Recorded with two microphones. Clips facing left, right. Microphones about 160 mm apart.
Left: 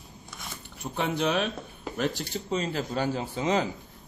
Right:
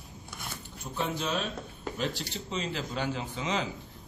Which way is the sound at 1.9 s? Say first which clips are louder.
Left 5 dB; 50° left (ahead or behind).